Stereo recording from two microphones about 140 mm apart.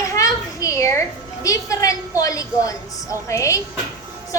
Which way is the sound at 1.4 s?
25° left (ahead or behind).